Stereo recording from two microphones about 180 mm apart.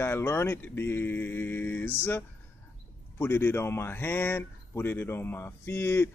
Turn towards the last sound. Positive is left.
turn(degrees=15)  # may be behind; listen again after turning